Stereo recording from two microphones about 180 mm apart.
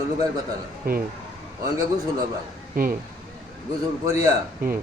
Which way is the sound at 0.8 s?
55° right (ahead or behind).